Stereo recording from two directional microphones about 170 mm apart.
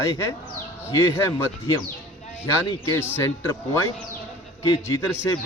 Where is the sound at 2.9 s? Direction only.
15° left (ahead or behind).